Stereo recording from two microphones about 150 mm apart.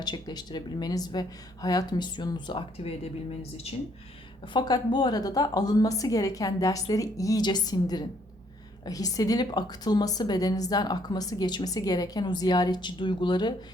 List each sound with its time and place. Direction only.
0.0 s a woman's voice: 30° left (ahead or behind)
4.5 s a woman's voice: 30° left (ahead or behind)